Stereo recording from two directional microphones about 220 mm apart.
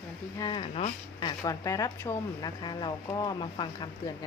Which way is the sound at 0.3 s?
20° left (ahead or behind).